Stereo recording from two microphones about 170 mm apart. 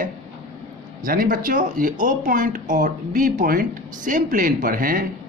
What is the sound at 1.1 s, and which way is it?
A woman's voice, 55° right (ahead or behind).